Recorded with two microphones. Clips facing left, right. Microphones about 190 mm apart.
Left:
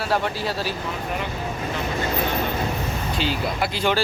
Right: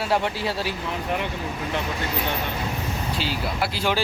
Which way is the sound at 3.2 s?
5° right (ahead or behind).